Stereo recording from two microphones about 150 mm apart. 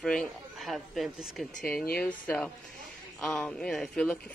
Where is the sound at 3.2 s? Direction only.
5° left (ahead or behind).